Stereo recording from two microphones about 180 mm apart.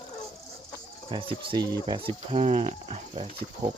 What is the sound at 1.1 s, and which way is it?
Speech, 30° right (ahead or behind).